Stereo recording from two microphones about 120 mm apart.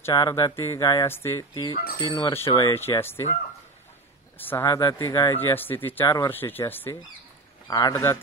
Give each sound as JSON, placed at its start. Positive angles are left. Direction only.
{"t": 0.1, "sound": "speech", "side_deg": 30}
{"t": 1.5, "sound": "speech", "side_deg": 40}
{"t": 2.0, "sound": "speech", "side_deg": 30}
{"t": 4.4, "sound": "speech", "side_deg": 15}
{"t": 4.6, "sound": "speech", "side_deg": 30}
{"t": 5.4, "sound": "speech", "side_deg": 15}
{"t": 6.0, "sound": "speech", "side_deg": 30}
{"t": 6.4, "sound": "speech", "side_deg": 20}
{"t": 7.6, "sound": "a man's voice", "side_deg": 35}
{"t": 7.9, "sound": "speech", "side_deg": 25}